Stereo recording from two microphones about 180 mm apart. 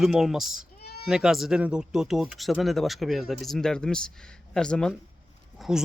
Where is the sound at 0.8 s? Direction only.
60° left (ahead or behind).